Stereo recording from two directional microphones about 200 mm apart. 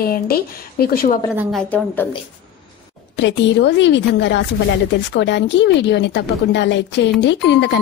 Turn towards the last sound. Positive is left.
turn(degrees=60)  # may be behind; listen again after turning